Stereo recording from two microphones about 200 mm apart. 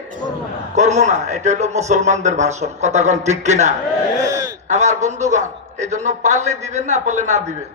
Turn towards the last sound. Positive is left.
turn(degrees=-35)  # may be behind; listen again after turning